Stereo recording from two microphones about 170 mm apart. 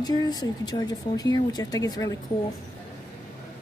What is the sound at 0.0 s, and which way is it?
Speech, 25° left (ahead or behind).